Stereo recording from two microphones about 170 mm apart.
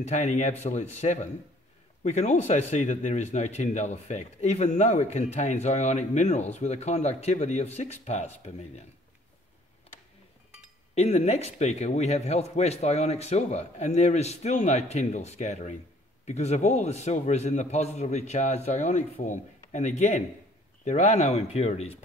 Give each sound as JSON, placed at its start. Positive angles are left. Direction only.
{"t": 0.0, "sound": "a man's voice", "side_deg": 40}
{"t": 11.0, "sound": "a man's voice", "side_deg": 40}